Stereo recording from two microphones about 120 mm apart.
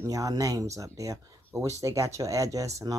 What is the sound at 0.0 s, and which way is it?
Speech, 30° right (ahead or behind).